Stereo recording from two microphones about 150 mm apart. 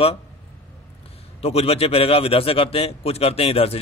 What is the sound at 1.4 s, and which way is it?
A man's voice, 40° left (ahead or behind).